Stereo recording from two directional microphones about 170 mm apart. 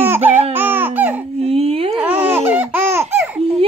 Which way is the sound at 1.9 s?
10° right (ahead or behind).